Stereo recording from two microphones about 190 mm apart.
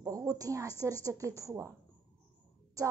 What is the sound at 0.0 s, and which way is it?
A woman's voice, 15° right (ahead or behind).